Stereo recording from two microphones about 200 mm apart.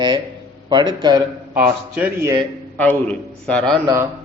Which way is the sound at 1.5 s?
10° right (ahead or behind).